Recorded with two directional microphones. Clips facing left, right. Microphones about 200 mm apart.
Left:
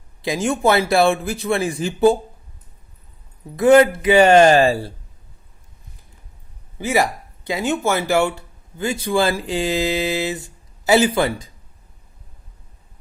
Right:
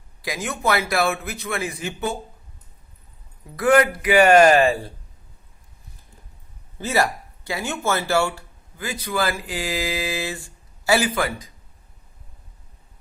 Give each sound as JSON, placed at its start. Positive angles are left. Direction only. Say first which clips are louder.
{"t": 0.2, "sound": "a man's voice", "louder": "left 8 dB", "side_deg": 25}
{"t": 3.5, "sound": "a man's voice", "louder": "left 5 dB", "side_deg": 25}
{"t": 6.7, "sound": "speech", "louder": "left 3 dB", "side_deg": 15}